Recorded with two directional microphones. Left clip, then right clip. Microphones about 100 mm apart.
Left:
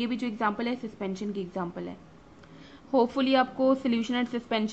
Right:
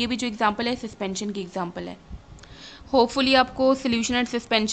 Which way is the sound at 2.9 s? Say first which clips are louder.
Right 5 dB; 15° right (ahead or behind).